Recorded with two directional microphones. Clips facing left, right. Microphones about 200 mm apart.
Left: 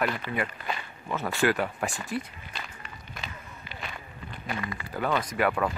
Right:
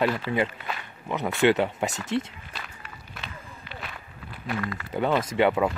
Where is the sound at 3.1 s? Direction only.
Centre (ahead or behind).